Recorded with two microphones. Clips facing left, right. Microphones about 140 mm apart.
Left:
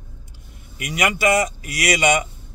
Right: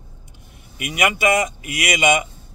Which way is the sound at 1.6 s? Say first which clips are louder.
Left 1 dB; 20° right (ahead or behind).